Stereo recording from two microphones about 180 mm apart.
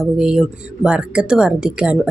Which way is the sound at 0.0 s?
Centre (ahead or behind).